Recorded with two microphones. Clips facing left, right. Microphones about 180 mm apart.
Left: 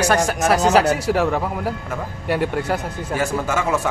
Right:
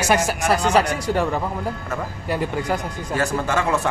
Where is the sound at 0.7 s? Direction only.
5° left (ahead or behind).